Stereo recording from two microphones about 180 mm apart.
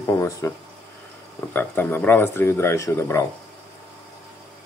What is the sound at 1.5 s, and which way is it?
Speech, 10° left (ahead or behind).